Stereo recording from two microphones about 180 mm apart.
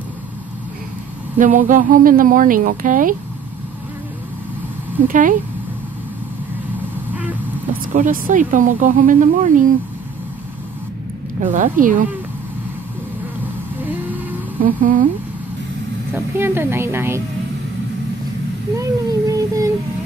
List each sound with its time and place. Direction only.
1.4 s speech: 45° right (ahead or behind)
5.0 s speech: 50° right (ahead or behind)
7.8 s speech: 50° right (ahead or behind)
11.5 s speech: 50° right (ahead or behind)
14.6 s speech: 50° right (ahead or behind)
16.3 s a woman's voice: 15° right (ahead or behind)
18.8 s a sound: 20° right (ahead or behind)